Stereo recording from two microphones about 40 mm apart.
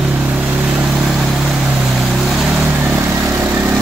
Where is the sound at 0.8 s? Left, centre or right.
Centre.